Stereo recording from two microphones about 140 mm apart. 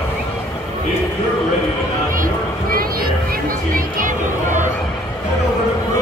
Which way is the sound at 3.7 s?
70° right (ahead or behind).